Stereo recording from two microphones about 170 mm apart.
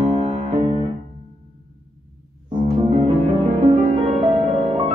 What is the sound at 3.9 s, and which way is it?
Music, 35° right (ahead or behind).